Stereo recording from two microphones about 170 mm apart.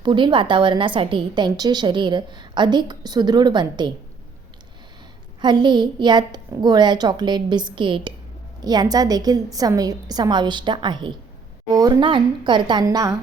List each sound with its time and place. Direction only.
0.0 s a woman's voice: 30° right (ahead or behind)
5.4 s a woman's voice: 25° right (ahead or behind)